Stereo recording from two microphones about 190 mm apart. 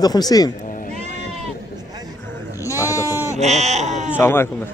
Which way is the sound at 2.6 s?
15° left (ahead or behind).